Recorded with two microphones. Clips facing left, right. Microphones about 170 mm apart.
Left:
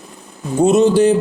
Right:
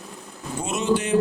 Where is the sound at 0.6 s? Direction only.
35° left (ahead or behind).